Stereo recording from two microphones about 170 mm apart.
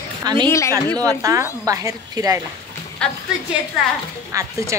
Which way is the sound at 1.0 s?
20° right (ahead or behind).